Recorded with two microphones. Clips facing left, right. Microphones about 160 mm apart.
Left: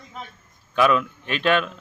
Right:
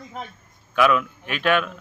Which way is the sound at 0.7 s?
25° left (ahead or behind).